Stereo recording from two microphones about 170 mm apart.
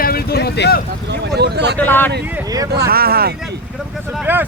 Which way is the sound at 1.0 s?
80° right.